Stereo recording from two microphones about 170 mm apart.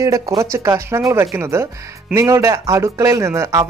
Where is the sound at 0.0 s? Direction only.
20° right (ahead or behind).